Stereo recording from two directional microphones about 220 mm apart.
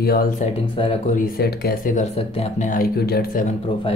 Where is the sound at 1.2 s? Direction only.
45° left (ahead or behind).